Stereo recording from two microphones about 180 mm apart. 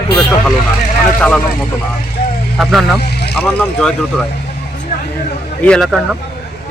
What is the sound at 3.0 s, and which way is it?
Vehicle, 65° left (ahead or behind).